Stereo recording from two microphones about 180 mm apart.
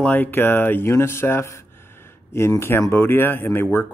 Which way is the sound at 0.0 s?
10° left (ahead or behind).